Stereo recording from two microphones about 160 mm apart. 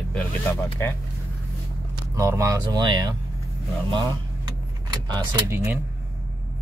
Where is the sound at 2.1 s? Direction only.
20° right (ahead or behind).